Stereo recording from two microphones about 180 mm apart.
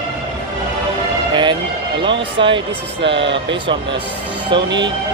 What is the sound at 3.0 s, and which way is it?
Speech, 80° right.